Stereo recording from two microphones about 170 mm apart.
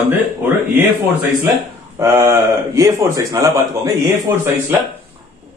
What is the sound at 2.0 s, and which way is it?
A man's voice, 15° right (ahead or behind).